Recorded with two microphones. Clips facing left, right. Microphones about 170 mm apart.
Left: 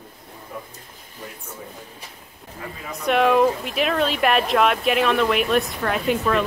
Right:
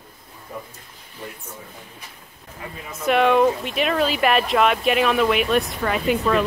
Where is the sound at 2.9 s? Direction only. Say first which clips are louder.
Right 1 dB; centre (ahead or behind).